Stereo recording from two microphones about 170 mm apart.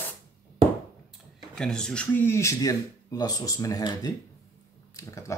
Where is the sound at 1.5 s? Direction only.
5° left (ahead or behind).